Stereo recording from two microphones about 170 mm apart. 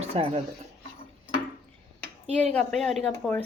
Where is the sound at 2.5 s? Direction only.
Centre (ahead or behind).